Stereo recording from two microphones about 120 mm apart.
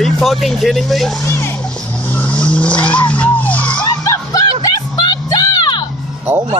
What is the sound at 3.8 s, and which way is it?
Music, 30° left (ahead or behind).